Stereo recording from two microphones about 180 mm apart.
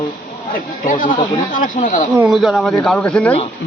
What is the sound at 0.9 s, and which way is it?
Speech, 50° left (ahead or behind).